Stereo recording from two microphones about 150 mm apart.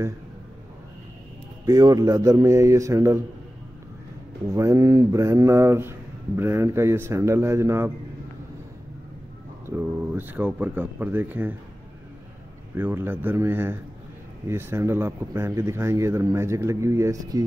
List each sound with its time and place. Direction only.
1.7 s a man's voice: 25° right (ahead or behind)
4.6 s a man's voice: 20° right (ahead or behind)
9.7 s speech: 15° right (ahead or behind)
12.7 s speech: 15° right (ahead or behind)